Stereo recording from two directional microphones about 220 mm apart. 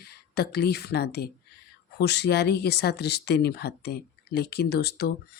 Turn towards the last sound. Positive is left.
turn(degrees=50)  # may be behind; listen again after turning